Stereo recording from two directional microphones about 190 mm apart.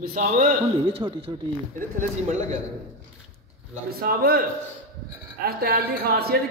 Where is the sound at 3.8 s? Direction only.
50° right (ahead or behind).